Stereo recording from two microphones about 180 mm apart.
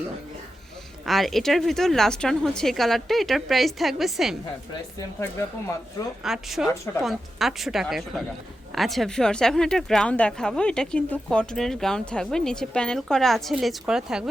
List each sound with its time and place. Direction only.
1.0 s speech: centre (ahead or behind)
4.7 s speech: 15° left (ahead or behind)
6.2 s speech: centre (ahead or behind)